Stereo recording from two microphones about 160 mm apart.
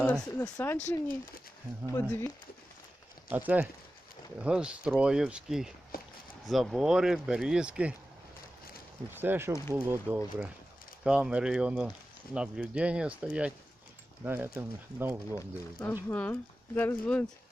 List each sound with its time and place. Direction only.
0.0 s speech: 10° left (ahead or behind)
0.8 s speech: 55° left (ahead or behind)
2.0 s speech: 15° left (ahead or behind)
3.3 s speech: 10° right (ahead or behind)
5.9 s a sound: 65° left (ahead or behind)
6.5 s speech: centre (ahead or behind)
9.1 s speech: 15° right (ahead or behind)
15.4 s speech: 15° left (ahead or behind)